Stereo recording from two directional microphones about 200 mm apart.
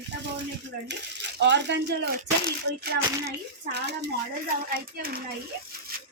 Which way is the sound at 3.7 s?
55° right (ahead or behind).